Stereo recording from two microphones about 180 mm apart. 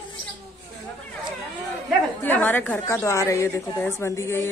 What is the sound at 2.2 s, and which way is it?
A woman's voice, 10° left (ahead or behind).